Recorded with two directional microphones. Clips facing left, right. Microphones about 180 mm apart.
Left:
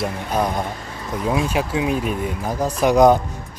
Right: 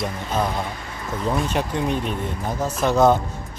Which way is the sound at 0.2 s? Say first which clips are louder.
Left 2 dB; 15° left (ahead or behind).